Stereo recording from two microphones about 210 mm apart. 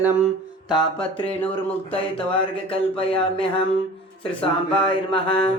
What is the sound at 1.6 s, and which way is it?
Speech, 25° left (ahead or behind).